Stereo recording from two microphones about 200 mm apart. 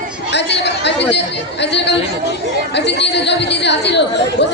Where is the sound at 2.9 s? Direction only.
60° left (ahead or behind).